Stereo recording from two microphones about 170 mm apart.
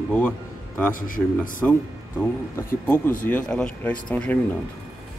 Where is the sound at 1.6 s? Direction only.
10° left (ahead or behind).